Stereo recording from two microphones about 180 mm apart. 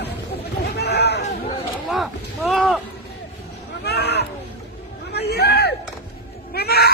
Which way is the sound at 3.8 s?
65° left (ahead or behind).